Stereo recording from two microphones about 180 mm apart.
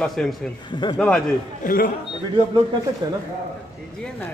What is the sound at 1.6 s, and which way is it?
Speech, 50° left (ahead or behind).